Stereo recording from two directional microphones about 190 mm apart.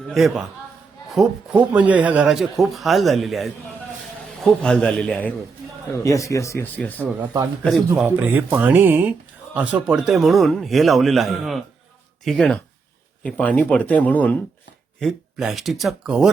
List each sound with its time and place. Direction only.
0.1 s speech: centre (ahead or behind)
5.9 s speech: 15° left (ahead or behind)
8.0 s speech: 10° right (ahead or behind)